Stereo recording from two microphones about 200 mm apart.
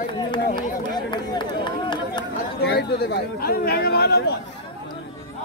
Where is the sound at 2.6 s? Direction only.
55° left (ahead or behind).